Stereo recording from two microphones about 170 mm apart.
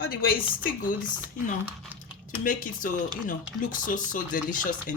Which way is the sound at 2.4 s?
50° left (ahead or behind).